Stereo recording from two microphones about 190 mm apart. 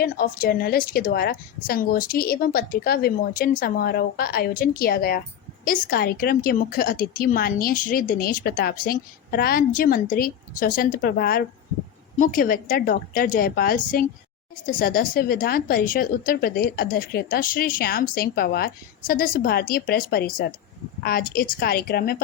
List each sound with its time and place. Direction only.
0.0 s a woman's voice: 50° left (ahead or behind)